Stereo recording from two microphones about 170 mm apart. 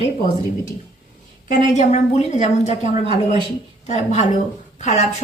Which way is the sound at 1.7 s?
40° left (ahead or behind).